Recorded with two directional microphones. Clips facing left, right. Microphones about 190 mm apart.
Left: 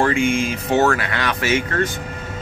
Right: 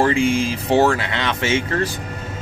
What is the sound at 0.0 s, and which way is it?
Speech, 30° right (ahead or behind).